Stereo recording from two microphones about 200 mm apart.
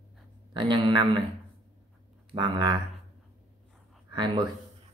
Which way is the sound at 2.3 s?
20° right (ahead or behind).